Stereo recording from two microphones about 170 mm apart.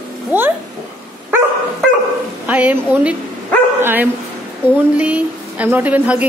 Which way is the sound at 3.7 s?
10° right (ahead or behind).